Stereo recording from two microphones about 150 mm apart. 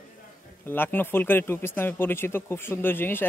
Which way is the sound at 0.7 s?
15° left (ahead or behind).